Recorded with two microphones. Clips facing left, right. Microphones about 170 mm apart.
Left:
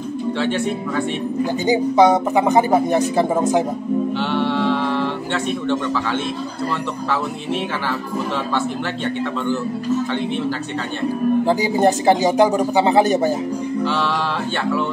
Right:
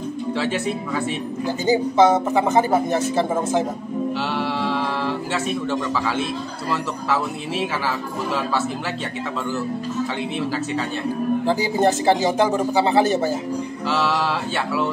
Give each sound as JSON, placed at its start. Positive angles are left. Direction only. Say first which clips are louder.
{"t": 0.4, "sound": "a man's voice", "louder": "left 2 dB", "side_deg": -5}
{"t": 1.7, "sound": "a man's voice", "louder": "left 1 dB", "side_deg": 15}
{"t": 4.3, "sound": "music", "louder": "left 5 dB", "side_deg": -5}
{"t": 5.3, "sound": "a man's voice", "louder": "left 4 dB", "side_deg": -5}
{"t": 11.4, "sound": "a man's voice", "louder": "even", "side_deg": 15}